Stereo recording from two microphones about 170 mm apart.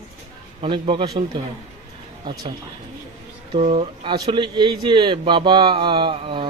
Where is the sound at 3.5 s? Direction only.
40° right (ahead or behind).